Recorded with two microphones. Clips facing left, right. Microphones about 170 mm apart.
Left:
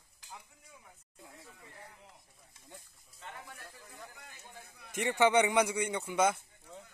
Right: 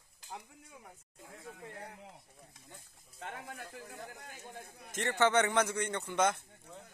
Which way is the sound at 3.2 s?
70° right (ahead or behind).